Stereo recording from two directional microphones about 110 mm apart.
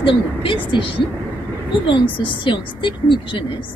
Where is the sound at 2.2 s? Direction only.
50° left (ahead or behind).